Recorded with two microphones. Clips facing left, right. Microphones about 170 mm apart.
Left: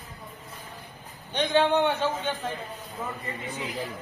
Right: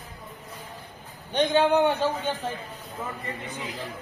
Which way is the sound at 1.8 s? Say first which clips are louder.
Right 2 dB; 40° right (ahead or behind).